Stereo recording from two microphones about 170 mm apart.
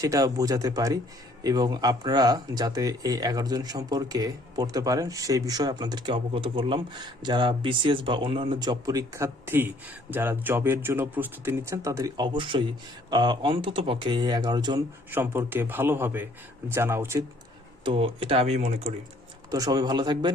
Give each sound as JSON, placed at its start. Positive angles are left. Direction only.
{"t": 0.0, "sound": "speech", "side_deg": -20}
{"t": 15.1, "sound": "a man's voice", "side_deg": -10}
{"t": 17.8, "sound": "speech", "side_deg": -30}
{"t": 19.5, "sound": "speech", "side_deg": -20}